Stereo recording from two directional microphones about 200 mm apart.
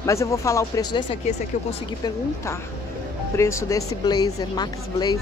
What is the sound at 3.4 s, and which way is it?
Speech, 15° left (ahead or behind).